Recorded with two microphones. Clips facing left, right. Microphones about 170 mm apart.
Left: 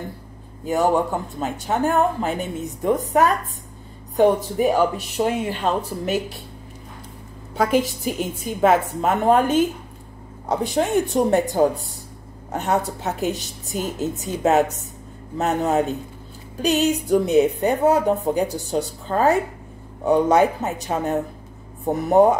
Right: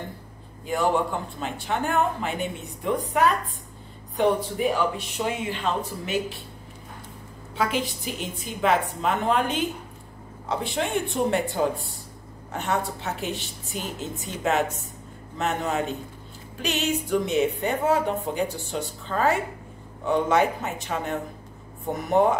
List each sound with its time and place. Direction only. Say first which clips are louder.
0.7 s a woman's voice: left 4 dB; 45° left (ahead or behind)
7.5 s a woman's voice: left 7 dB; 45° left (ahead or behind)